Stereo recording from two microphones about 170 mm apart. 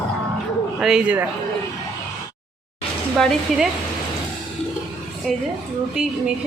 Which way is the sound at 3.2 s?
Centre (ahead or behind).